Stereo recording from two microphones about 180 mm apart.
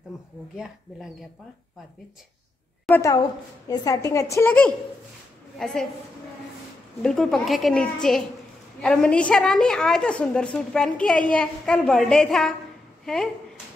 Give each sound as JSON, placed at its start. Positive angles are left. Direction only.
{"t": 0.1, "sound": "a sound", "side_deg": 0}
{"t": 2.9, "sound": "a woman's voice", "side_deg": 15}
{"t": 7.0, "sound": "a woman's voice", "side_deg": 5}